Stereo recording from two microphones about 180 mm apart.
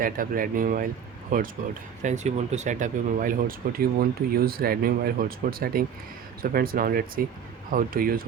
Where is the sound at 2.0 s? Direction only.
40° right (ahead or behind).